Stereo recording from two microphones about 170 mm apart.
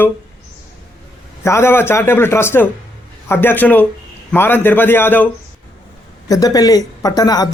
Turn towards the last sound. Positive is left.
turn(degrees=20)  # may be behind; listen again after turning